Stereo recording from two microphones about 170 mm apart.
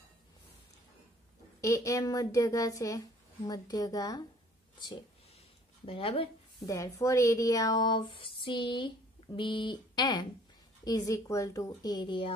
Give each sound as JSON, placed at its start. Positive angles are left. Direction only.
{"t": 1.6, "sound": "speech", "side_deg": 20}
{"t": 6.6, "sound": "speech", "side_deg": 20}